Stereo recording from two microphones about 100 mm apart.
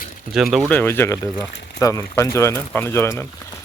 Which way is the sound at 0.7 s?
20° left (ahead or behind).